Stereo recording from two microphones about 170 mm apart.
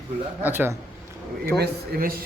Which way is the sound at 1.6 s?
60° right (ahead or behind).